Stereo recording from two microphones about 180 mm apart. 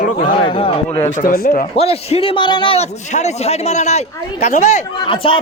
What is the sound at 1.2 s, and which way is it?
Speech, 50° left (ahead or behind).